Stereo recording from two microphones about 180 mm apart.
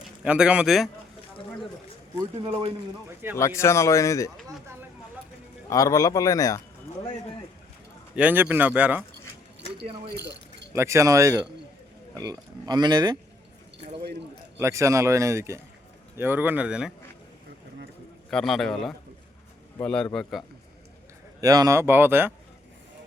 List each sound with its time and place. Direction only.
0.3 s a man's voice: 5° right (ahead or behind)
2.1 s speech: 25° right (ahead or behind)
3.3 s speech: 15° left (ahead or behind)
5.6 s a man's voice: 20° left (ahead or behind)
8.1 s speech: 10° right (ahead or behind)
10.2 s keys jangling: 70° right (ahead or behind)
10.7 s speech: 15° right (ahead or behind)
14.6 s speech: 15° right (ahead or behind)
18.3 s a man's voice: 5° left (ahead or behind)
21.4 s speech: 20° right (ahead or behind)